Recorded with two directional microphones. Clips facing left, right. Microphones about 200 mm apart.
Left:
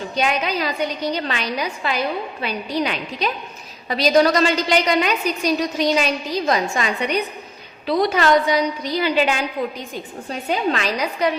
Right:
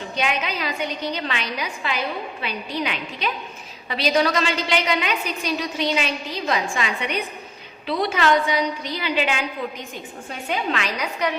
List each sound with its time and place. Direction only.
0.2 s a woman's voice: 40° left (ahead or behind)